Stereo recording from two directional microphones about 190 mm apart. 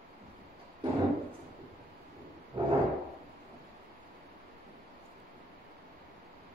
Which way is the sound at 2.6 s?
30° right (ahead or behind).